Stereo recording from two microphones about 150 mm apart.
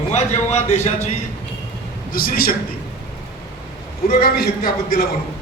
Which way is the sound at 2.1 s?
75° left (ahead or behind).